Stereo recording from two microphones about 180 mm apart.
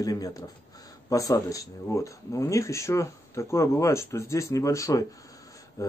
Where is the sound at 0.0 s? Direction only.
20° left (ahead or behind).